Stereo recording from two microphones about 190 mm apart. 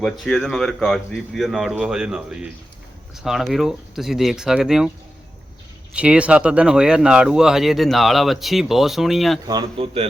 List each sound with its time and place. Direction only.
0.0 s speech: centre (ahead or behind)
5.9 s speech: 5° right (ahead or behind)
9.5 s speech: 25° right (ahead or behind)